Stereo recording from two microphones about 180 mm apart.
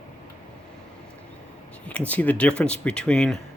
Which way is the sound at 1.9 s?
5° left (ahead or behind).